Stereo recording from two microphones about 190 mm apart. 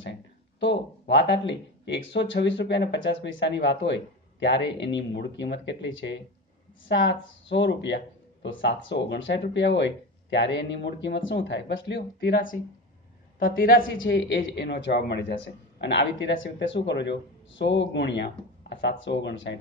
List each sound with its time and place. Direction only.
0.6 s a woman's voice: 70° left (ahead or behind); by 13.8 s 50° left (ahead or behind)
14.0 s speech: 70° left (ahead or behind)